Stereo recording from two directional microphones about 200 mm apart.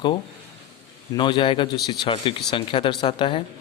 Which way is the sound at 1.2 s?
25° left (ahead or behind).